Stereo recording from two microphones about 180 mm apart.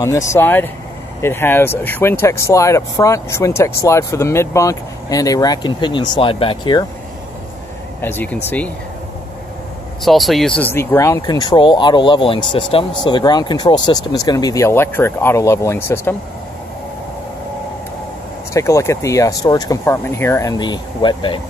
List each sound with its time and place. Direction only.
0.3 s speech: 10° left (ahead or behind)
8.0 s speech: 10° left (ahead or behind)
10.0 s speech: centre (ahead or behind)
18.5 s speech: 15° left (ahead or behind)